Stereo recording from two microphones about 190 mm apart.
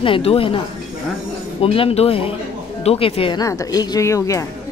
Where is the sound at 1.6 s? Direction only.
30° left (ahead or behind).